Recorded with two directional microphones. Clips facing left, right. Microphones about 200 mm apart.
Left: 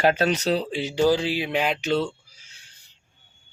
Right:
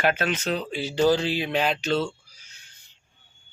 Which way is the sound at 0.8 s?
10° left (ahead or behind).